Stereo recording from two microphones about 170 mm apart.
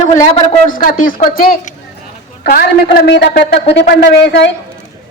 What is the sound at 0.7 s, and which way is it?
Speech, 55° left (ahead or behind).